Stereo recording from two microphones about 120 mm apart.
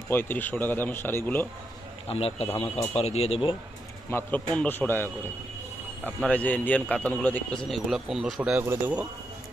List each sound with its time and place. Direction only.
0.1 s a man's voice: 15° left (ahead or behind)
2.0 s speech: 55° left (ahead or behind)
4.1 s a man's voice: 10° left (ahead or behind); by 9.0 s 15° right (ahead or behind)